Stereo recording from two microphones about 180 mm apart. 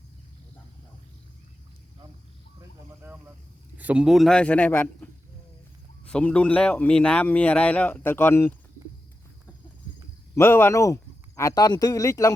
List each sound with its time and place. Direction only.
2.6 s a sound: 10° right (ahead or behind)
3.8 s a man's voice: 5° right (ahead or behind); by 5.0 s 10° left (ahead or behind)
6.1 s a man's voice: 5° left (ahead or behind)
10.3 s speech: 15° left (ahead or behind)